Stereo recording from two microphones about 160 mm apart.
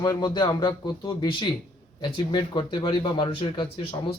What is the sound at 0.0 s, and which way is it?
Speech, 25° left (ahead or behind).